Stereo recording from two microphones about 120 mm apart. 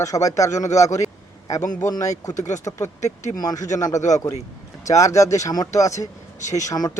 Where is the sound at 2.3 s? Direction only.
90° left.